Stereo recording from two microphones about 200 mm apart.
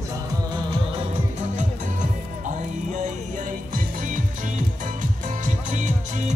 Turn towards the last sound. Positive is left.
turn(degrees=-40)  # may be behind; listen again after turning